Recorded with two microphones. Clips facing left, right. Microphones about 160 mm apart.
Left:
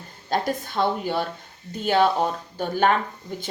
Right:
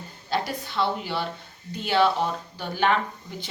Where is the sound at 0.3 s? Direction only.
45° left (ahead or behind).